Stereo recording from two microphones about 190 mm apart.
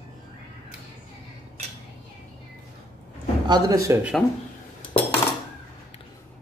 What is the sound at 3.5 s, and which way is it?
Speech, 15° right (ahead or behind).